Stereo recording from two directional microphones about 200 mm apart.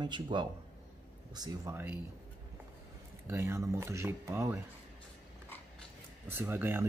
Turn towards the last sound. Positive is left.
turn(degrees=-10)  # may be behind; listen again after turning